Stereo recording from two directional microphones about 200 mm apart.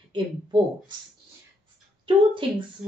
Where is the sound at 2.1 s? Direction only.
25° right (ahead or behind).